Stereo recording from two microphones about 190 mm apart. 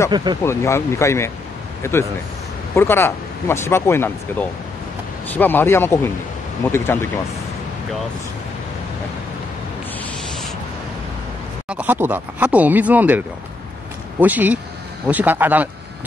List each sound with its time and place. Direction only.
0.1 s speech: 25° right (ahead or behind)
0.4 s speech: 15° left (ahead or behind)
11.7 s speech: 10° right (ahead or behind)
14.2 s speech: 10° right (ahead or behind)